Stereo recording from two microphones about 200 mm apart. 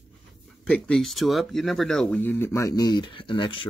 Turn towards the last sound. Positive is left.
turn(degrees=25)  # may be behind; listen again after turning